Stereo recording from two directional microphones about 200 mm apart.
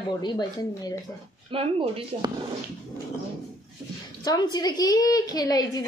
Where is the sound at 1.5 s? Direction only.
25° right (ahead or behind).